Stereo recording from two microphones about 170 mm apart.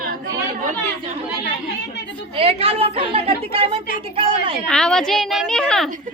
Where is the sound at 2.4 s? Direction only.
35° right (ahead or behind).